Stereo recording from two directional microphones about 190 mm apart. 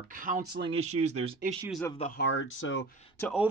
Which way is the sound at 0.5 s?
65° right (ahead or behind).